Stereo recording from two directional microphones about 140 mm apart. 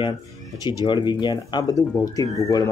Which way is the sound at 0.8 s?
30° left (ahead or behind).